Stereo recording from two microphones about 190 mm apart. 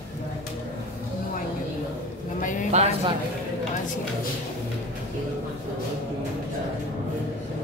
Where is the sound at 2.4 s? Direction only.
40° left (ahead or behind).